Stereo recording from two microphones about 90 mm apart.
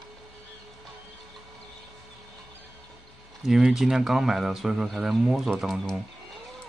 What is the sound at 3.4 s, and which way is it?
Speech, 5° right (ahead or behind).